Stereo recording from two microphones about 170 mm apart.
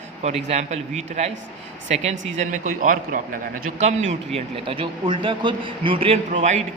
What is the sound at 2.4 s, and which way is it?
A man's voice, 45° right (ahead or behind).